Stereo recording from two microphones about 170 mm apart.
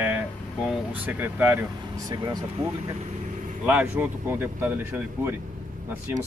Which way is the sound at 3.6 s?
10° right (ahead or behind).